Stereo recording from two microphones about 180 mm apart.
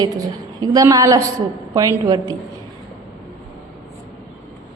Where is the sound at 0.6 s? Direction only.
20° right (ahead or behind).